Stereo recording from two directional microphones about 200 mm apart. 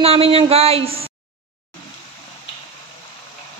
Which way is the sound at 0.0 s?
30° right (ahead or behind).